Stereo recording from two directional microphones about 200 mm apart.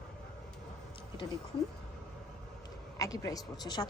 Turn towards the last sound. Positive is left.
turn(degrees=20)  # may be behind; listen again after turning